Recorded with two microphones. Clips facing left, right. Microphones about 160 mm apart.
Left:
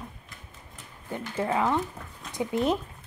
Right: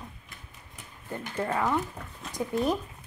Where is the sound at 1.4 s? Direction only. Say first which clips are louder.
Left 3 dB; 5° left (ahead or behind).